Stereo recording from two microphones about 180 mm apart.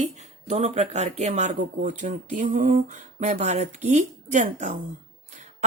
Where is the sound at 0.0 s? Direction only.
40° right (ahead or behind).